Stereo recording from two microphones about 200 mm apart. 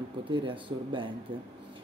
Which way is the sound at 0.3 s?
25° right (ahead or behind).